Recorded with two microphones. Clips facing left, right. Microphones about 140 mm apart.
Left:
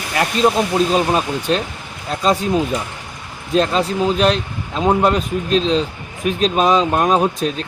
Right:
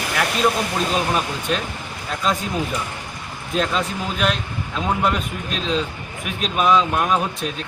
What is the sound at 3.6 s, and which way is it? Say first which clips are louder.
Speech: left 5 dB; 30° left (ahead or behind).